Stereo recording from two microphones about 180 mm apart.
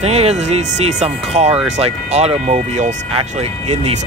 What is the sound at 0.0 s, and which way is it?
Speech, 35° right (ahead or behind).